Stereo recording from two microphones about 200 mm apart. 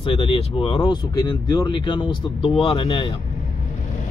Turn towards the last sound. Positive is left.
turn(degrees=25)  # may be behind; listen again after turning